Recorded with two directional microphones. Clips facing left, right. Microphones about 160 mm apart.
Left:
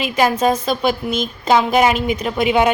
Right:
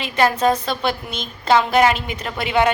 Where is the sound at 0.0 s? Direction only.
10° left (ahead or behind).